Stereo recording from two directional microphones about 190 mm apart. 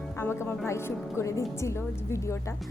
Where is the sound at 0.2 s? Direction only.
15° left (ahead or behind).